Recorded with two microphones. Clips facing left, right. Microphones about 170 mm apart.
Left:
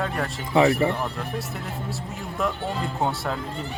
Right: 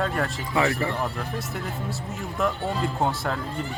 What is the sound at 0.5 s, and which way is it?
Speech, 20° left (ahead or behind).